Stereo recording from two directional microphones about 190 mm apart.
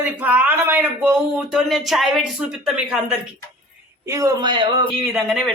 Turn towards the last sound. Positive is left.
turn(degrees=0)  # may be behind; listen again after turning